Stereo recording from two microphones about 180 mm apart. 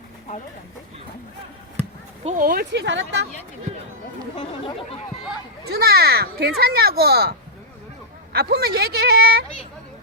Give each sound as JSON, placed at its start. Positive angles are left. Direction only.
{"t": 2.2, "sound": "speech", "side_deg": -50}
{"t": 2.7, "sound": "speech", "side_deg": -85}
{"t": 4.4, "sound": "speech", "side_deg": 30}
{"t": 5.6, "sound": "a child's voice", "side_deg": -60}